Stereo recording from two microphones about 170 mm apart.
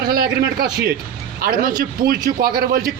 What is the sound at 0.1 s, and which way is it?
A man's voice, 70° right (ahead or behind).